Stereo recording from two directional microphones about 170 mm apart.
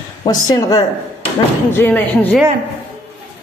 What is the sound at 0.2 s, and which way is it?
A woman's voice, 20° left (ahead or behind).